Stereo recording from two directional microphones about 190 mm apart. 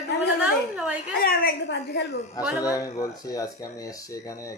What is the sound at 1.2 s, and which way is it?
Speech, 55° left (ahead or behind).